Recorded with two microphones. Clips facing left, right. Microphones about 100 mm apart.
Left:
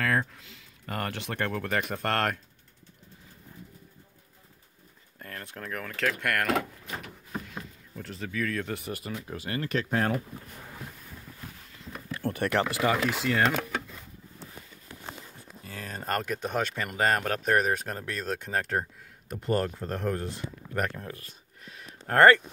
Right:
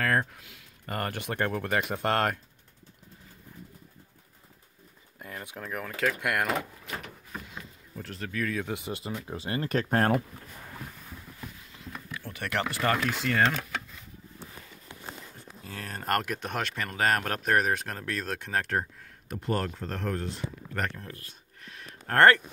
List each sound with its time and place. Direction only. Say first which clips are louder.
0.0 s a sound: right 1 dB; centre (ahead or behind)
0.4 s a sound: even; 10° right (ahead or behind)
0.9 s speech: right 1 dB; 5° right (ahead or behind)
5.2 s speech: even; 10° right (ahead or behind)
7.9 s speech: even; centre (ahead or behind)
8.6 s speech: right 1 dB; 15° right (ahead or behind); by 10.2 s 45° right (ahead or behind)
12.3 s speech: left 9 dB; 35° left (ahead or behind)
12.5 s speech: left 1 dB; 15° left (ahead or behind)
12.9 s speech: left 1 dB; 5° left (ahead or behind)
15.7 s speech: right 2 dB; centre (ahead or behind)
21.3 s a sound: even; 10° left (ahead or behind)
22.0 s speech: left 1 dB; 5° left (ahead or behind)